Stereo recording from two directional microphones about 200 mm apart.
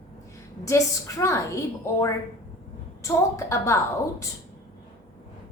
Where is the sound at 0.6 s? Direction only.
15° left (ahead or behind).